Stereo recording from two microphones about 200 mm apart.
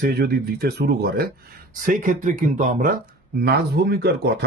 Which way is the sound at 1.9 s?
40° right (ahead or behind).